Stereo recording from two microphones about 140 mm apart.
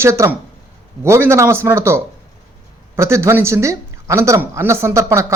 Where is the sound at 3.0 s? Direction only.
20° right (ahead or behind).